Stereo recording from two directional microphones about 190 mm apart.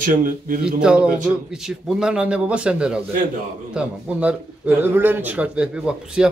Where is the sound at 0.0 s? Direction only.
45° right (ahead or behind).